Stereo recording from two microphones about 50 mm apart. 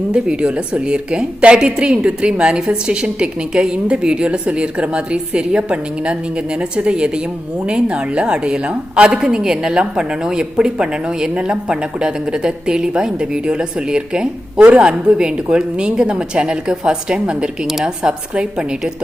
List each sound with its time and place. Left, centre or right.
0.1 s a woman's voice: centre
14.6 s a woman's voice: right
14.8 s a woman's voice: centre
17.7 s a woman's voice: centre